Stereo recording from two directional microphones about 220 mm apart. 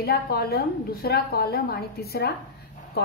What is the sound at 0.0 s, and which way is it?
A woman's voice, 45° left (ahead or behind).